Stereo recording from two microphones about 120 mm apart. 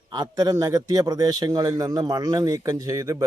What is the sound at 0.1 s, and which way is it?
A man's voice, 30° right (ahead or behind).